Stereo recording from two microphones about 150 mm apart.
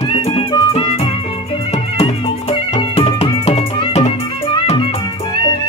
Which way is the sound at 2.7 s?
40° left (ahead or behind).